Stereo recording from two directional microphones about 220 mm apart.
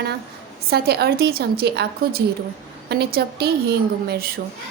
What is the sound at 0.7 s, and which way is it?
A woman's voice, 45° right (ahead or behind).